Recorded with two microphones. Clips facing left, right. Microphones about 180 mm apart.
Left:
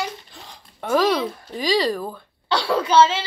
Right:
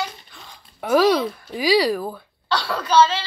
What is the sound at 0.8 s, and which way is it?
Speech, 10° right (ahead or behind).